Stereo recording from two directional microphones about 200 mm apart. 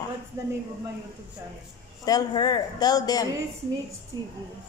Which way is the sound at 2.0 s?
20° left (ahead or behind).